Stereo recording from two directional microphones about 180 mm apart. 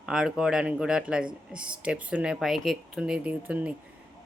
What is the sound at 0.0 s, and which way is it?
A woman's voice, 5° right (ahead or behind).